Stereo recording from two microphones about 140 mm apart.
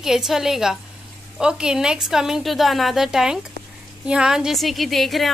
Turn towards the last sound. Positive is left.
turn(degrees=0)  # may be behind; listen again after turning